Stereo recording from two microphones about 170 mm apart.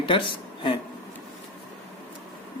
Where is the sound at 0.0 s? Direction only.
30° left (ahead or behind).